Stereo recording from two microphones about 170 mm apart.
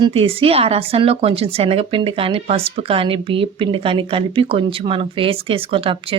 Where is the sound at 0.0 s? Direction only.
35° right (ahead or behind).